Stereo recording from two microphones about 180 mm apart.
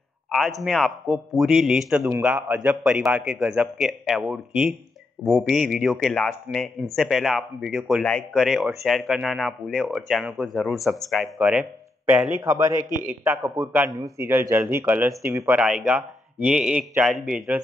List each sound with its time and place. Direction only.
0.3 s a man's voice: centre (ahead or behind)
12.4 s a man's voice: 15° right (ahead or behind)